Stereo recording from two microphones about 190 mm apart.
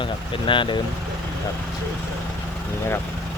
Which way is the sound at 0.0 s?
25° left (ahead or behind).